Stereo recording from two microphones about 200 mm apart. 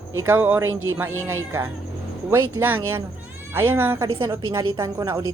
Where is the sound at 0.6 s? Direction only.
90° right.